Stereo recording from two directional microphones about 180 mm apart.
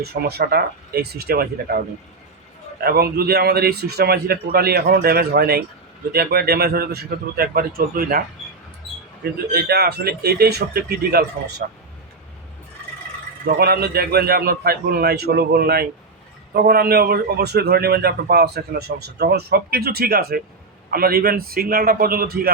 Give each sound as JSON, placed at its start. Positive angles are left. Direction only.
{"t": 0.0, "sound": "a man's voice", "side_deg": -60}
{"t": 2.8, "sound": "a man's voice", "side_deg": -60}
{"t": 9.5, "sound": "a man's voice", "side_deg": -60}
{"t": 13.6, "sound": "a man's voice", "side_deg": -60}